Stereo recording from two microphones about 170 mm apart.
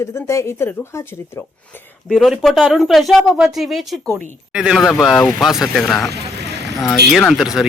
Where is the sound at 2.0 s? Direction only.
Centre (ahead or behind).